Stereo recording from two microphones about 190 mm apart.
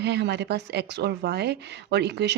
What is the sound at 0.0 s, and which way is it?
Speech, 65° right (ahead or behind).